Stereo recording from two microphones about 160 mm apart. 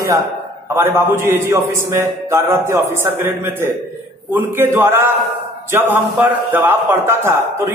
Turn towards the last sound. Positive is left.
turn(degrees=-15)  # may be behind; listen again after turning